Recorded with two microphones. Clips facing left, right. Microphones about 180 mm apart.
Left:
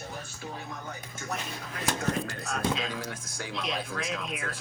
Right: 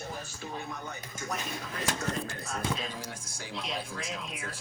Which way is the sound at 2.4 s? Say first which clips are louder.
Left 5 dB; 80° left.